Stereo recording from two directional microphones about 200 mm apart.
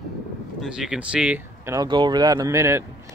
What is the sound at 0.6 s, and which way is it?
Speech, 5° right (ahead or behind).